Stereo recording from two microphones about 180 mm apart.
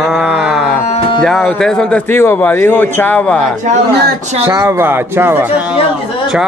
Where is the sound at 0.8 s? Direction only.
35° left (ahead or behind).